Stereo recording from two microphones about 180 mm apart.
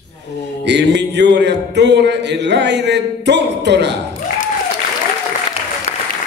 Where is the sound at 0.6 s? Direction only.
70° right (ahead or behind).